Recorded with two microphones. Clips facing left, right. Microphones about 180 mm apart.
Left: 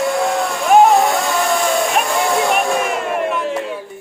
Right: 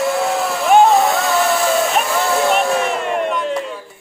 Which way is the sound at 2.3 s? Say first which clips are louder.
Right 2 dB; centre (ahead or behind).